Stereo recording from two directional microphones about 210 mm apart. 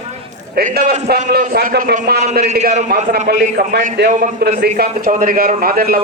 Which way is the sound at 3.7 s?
50° right (ahead or behind).